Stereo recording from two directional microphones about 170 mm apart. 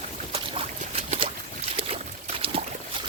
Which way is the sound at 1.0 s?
35° right (ahead or behind).